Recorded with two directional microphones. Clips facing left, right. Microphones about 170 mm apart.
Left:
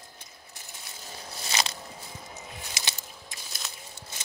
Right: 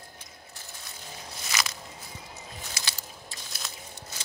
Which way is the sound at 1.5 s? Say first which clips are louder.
Left 2 dB; 30° left (ahead or behind).